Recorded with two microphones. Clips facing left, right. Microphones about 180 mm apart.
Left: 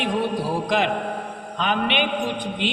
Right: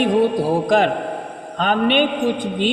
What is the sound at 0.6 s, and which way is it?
A man's voice, 45° right (ahead or behind).